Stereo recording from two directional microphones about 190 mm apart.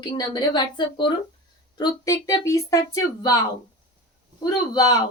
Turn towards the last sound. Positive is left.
turn(degrees=20)  # may be behind; listen again after turning